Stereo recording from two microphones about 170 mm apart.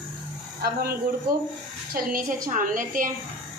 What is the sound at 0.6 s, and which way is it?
A woman's voice, 60° right (ahead or behind).